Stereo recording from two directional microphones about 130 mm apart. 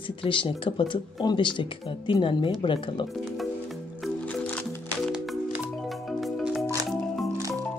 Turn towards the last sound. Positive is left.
turn(degrees=0)  # may be behind; listen again after turning